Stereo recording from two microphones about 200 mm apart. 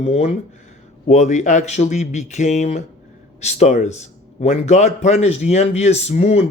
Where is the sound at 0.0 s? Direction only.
35° left (ahead or behind).